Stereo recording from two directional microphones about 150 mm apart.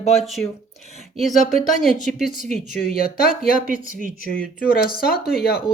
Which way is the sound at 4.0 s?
65° right (ahead or behind).